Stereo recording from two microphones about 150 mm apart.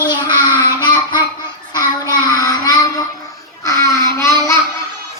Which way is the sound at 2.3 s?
25° left (ahead or behind).